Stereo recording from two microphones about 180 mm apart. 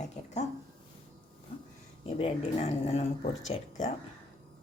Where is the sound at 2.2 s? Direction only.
35° left (ahead or behind).